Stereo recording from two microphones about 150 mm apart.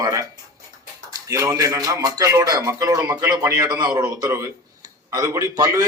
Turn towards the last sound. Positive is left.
turn(degrees=-25)  # may be behind; listen again after turning